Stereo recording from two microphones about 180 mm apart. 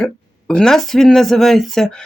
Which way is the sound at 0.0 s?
5° left (ahead or behind).